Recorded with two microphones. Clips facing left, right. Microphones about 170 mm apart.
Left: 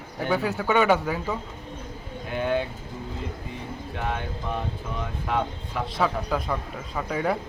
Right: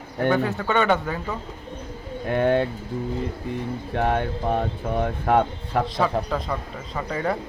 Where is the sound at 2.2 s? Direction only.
60° right (ahead or behind).